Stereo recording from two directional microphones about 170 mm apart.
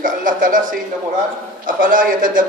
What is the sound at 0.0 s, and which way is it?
Speech, 50° right (ahead or behind).